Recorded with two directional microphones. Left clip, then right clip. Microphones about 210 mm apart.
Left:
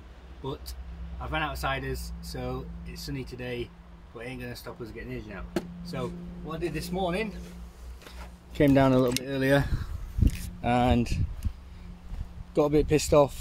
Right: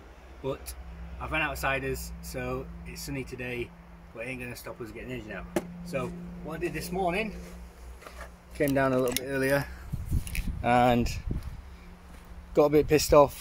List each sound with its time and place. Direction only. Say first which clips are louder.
1.3 s speech: right 1 dB; 5° left (ahead or behind)
6.7 s speech: right 2 dB; 20° left (ahead or behind)
8.5 s speech: left 4 dB; 50° left (ahead or behind)
10.6 s speech: right 2 dB; centre (ahead or behind)
12.5 s speech: right 2 dB; 5° right (ahead or behind)